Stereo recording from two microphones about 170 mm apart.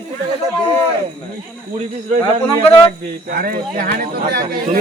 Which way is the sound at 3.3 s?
60° right (ahead or behind).